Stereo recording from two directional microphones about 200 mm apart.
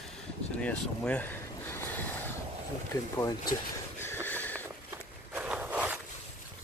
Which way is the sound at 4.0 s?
10° left (ahead or behind).